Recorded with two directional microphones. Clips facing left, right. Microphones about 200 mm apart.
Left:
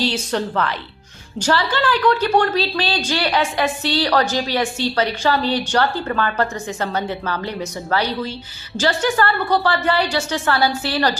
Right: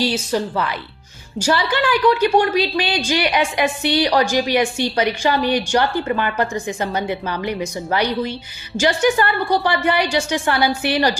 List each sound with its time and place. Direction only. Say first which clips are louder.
0.0 s a woman's voice: right 1 dB; 10° right (ahead or behind)